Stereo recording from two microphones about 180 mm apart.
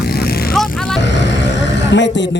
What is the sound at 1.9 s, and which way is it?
Speech, 80° left.